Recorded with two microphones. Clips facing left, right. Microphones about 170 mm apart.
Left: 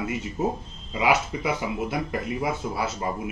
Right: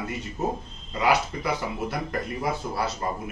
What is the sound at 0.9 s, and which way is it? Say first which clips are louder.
A man's voice: even; 5° left (ahead or behind).